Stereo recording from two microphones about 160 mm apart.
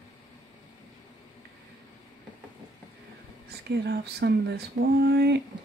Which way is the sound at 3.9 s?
90° right.